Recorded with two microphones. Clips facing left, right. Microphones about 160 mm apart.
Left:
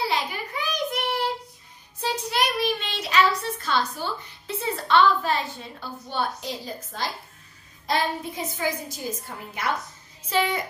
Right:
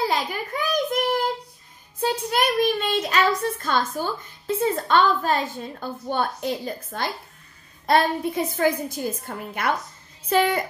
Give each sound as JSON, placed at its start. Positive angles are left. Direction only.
{"t": 0.0, "sound": "child singing", "side_deg": -45}
{"t": 2.0, "sound": "a child's voice", "side_deg": -50}